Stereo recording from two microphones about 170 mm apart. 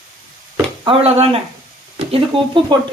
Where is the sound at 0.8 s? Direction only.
35° right (ahead or behind).